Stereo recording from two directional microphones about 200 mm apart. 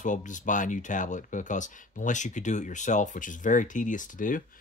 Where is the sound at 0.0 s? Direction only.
40° left (ahead or behind).